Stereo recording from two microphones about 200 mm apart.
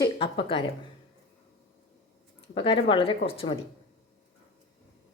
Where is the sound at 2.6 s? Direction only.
25° left (ahead or behind).